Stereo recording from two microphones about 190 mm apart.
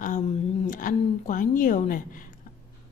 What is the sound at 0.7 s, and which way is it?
A woman's voice, 45° left (ahead or behind).